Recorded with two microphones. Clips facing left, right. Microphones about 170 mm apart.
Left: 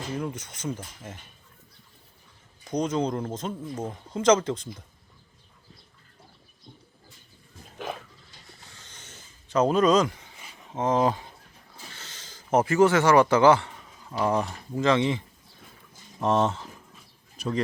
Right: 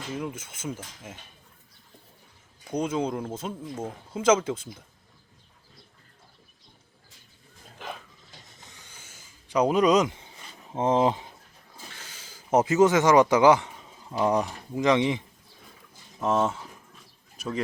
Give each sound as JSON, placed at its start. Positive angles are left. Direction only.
{"t": 0.1, "sound": "speech", "side_deg": -5}
{"t": 2.6, "sound": "speech", "side_deg": -10}
{"t": 8.5, "sound": "a sound", "side_deg": -15}
{"t": 10.8, "sound": "speech", "side_deg": -25}
{"t": 16.2, "sound": "speech", "side_deg": -5}
{"t": 17.3, "sound": "bird", "side_deg": 0}